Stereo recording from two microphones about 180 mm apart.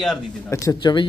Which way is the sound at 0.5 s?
15° left (ahead or behind).